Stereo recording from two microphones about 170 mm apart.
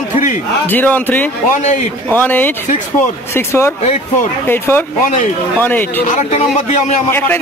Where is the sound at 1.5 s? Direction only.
50° left (ahead or behind).